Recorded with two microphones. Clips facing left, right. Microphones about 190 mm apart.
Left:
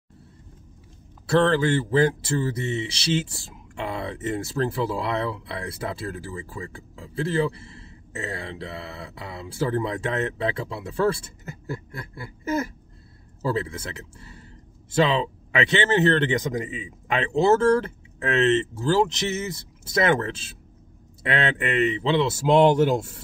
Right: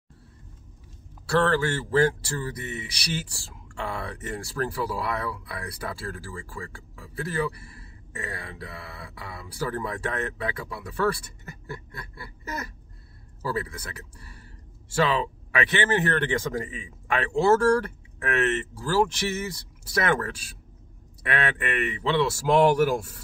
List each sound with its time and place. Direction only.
1.2 s speech: 20° left (ahead or behind)